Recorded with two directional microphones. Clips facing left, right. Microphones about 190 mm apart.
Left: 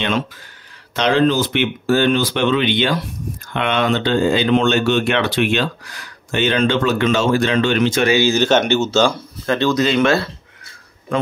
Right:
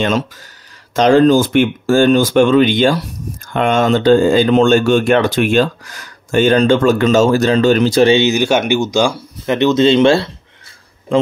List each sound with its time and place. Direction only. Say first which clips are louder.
0.9 s speech: right 6 dB; 45° right (ahead or behind)
8.3 s speech: right 1 dB; 10° right (ahead or behind)